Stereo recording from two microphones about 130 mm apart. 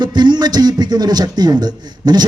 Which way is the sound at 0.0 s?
35° right (ahead or behind).